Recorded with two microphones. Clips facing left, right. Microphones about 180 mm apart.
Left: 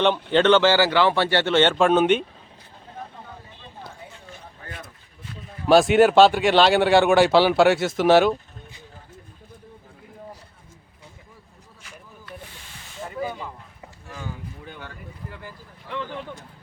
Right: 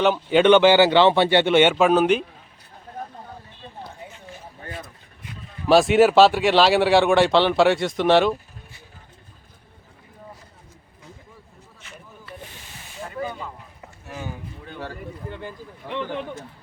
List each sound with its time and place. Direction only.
0.0 s speech: 5° right (ahead or behind)
5.6 s speech: centre (ahead or behind)
13.0 s hiss: 5° left (ahead or behind)
14.1 s boat: 20° right (ahead or behind)
14.8 s a sound: 30° right (ahead or behind)